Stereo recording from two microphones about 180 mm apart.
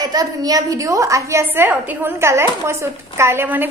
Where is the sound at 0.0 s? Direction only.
20° right (ahead or behind).